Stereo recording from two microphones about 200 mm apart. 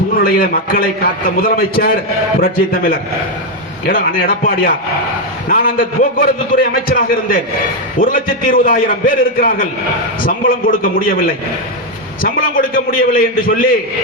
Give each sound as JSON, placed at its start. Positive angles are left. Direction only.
{"t": 0.2, "sound": "a man's voice", "side_deg": 45}